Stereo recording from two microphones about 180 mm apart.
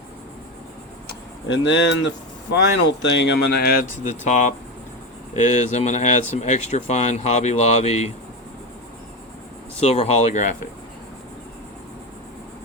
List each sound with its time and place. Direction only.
1.0 s speech: 85° left; by 8.1 s 35° left (ahead or behind)
9.8 s speech: 35° left (ahead or behind)